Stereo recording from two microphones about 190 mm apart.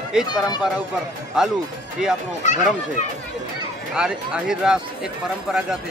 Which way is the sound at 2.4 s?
40° left (ahead or behind).